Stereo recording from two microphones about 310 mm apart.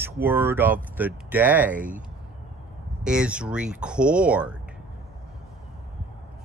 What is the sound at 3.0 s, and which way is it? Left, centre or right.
Speech, centre.